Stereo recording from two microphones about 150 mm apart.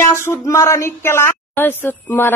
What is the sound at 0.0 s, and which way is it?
A woman's voice, 15° left (ahead or behind).